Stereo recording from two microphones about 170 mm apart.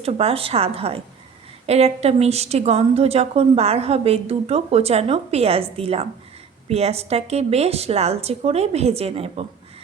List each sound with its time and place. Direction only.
0.0 s a woman's voice: 35° right (ahead or behind)